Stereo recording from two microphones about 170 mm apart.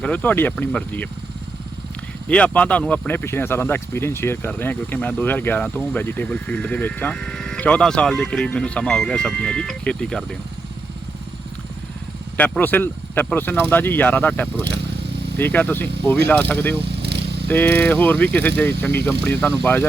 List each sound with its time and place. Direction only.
0.0 s speech: 10° left (ahead or behind)
2.2 s speech: 5° left (ahead or behind)
12.4 s speech: 10° left (ahead or behind)
14.6 s vehicle: 80° right
15.4 s speech: 10° left (ahead or behind)
16.8 s vehicle: 80° right
17.5 s speech: 10° left (ahead or behind)